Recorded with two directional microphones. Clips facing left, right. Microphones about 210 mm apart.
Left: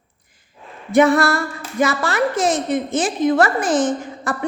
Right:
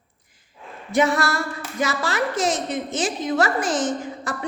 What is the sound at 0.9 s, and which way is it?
A woman's voice, 55° left (ahead or behind).